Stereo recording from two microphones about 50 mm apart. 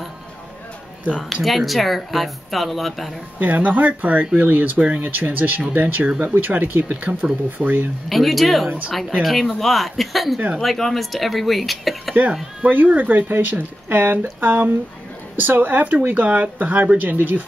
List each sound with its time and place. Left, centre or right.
1.3 s speech: centre
3.3 s speech: right
5.0 s speech: right
6.2 s speech: right
7.0 s speech: right
7.5 s speech: right
8.1 s speech: centre
12.6 s speech: right